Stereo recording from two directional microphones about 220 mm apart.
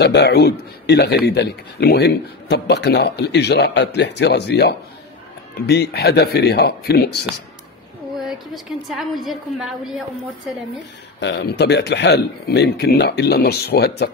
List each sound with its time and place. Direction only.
0.0 s speech: 50° left (ahead or behind)
8.2 s a woman's voice: centre (ahead or behind)
11.1 s speech: 50° left (ahead or behind)